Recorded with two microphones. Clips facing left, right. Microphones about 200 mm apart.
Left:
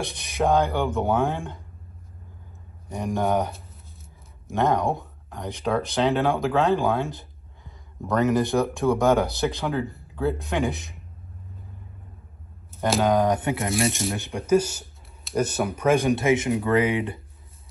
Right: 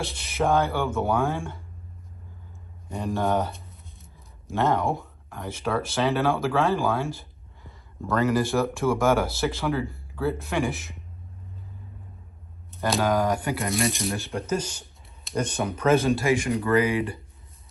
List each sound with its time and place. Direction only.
0.0 s speech: 15° left (ahead or behind)
2.9 s speech: 15° left (ahead or behind)
13.0 s speech: 20° left (ahead or behind)
13.8 s speech: centre (ahead or behind)
14.1 s speech: 15° left (ahead or behind)